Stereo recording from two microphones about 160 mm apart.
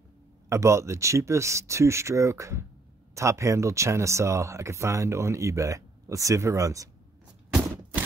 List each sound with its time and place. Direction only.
0.5 s speech: 20° right (ahead or behind)